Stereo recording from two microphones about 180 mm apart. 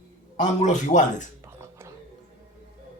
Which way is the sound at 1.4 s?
15° right (ahead or behind).